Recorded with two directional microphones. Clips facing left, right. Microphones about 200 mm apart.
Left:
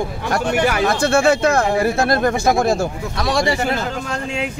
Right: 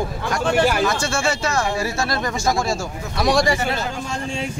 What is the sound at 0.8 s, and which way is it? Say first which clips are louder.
Speech: left 6 dB; 60° left (ahead or behind).